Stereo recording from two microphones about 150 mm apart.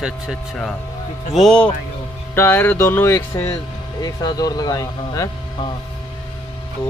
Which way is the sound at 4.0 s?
25° left (ahead or behind).